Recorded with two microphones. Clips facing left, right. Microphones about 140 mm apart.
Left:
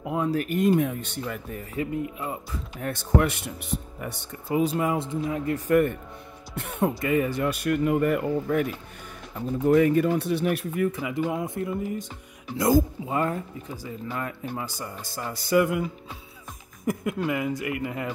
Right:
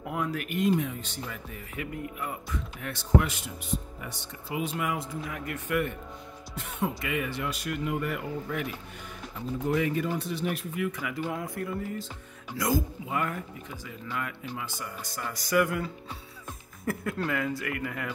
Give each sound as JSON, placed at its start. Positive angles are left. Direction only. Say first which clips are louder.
{"t": 0.0, "sound": "speech", "louder": "left 6 dB", "side_deg": 25}
{"t": 0.7, "sound": "speech", "louder": "left 3 dB", "side_deg": 55}
{"t": 1.8, "sound": "speech", "louder": "left 6 dB", "side_deg": 25}
{"t": 2.8, "sound": "speech", "louder": "left 3 dB", "side_deg": 50}
{"t": 6.5, "sound": "speech", "louder": "left 6 dB", "side_deg": 60}
{"t": 7.0, "sound": "speech", "louder": "left 8 dB", "side_deg": 35}
{"t": 7.4, "sound": "speech", "louder": "left 8 dB", "side_deg": 55}
{"t": 9.7, "sound": "speech", "louder": "left 9 dB", "side_deg": 50}
{"t": 11.0, "sound": "speech", "louder": "left 5 dB", "side_deg": 20}
{"t": 12.5, "sound": "speech", "louder": "left 7 dB", "side_deg": 30}